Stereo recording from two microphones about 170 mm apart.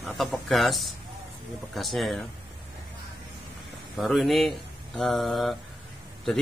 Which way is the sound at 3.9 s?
Centre (ahead or behind).